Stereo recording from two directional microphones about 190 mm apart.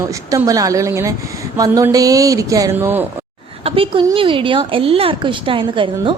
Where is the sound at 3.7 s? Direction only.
30° right (ahead or behind).